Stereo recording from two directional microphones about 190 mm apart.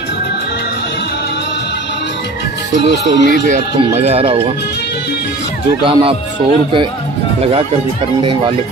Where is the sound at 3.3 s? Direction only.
40° right (ahead or behind).